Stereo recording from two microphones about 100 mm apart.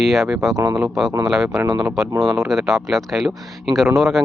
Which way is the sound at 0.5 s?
35° right (ahead or behind).